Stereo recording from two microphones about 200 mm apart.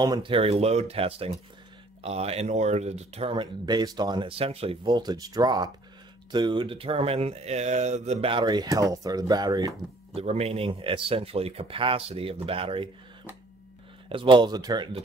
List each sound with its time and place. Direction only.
0.0 s speech: 25° right (ahead or behind)
10.1 s speech: 30° right (ahead or behind)
14.0 s speech: 25° right (ahead or behind)